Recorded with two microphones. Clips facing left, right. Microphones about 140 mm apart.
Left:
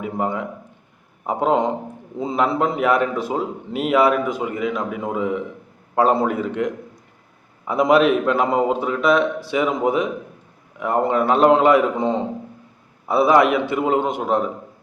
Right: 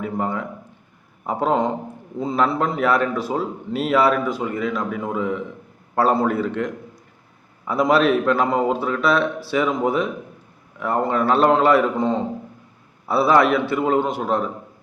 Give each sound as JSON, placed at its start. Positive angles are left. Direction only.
{"t": 0.0, "sound": "a man's voice", "side_deg": 15}